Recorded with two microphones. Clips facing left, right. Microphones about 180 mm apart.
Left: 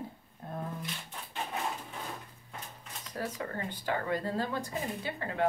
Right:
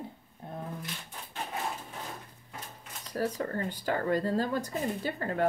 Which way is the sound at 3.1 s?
40° right (ahead or behind).